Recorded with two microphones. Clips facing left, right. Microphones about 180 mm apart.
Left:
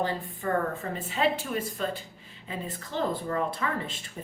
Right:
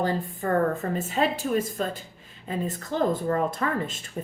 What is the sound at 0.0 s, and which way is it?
A woman's voice, 40° right (ahead or behind).